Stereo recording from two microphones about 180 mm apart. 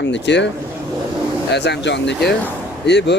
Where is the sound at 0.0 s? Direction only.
80° left.